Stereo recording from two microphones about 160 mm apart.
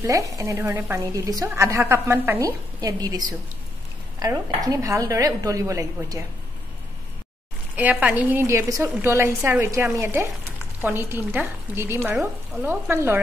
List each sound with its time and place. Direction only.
0.0 s a woman's voice: 20° right (ahead or behind)
4.6 s a woman's voice: 20° right (ahead or behind)
7.7 s speech: 10° right (ahead or behind)